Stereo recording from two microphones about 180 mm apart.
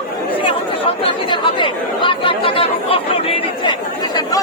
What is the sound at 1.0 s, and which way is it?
Chatter, 25° left (ahead or behind).